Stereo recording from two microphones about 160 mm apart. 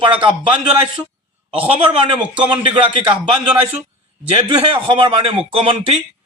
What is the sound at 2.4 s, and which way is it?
Speech, 30° right (ahead or behind).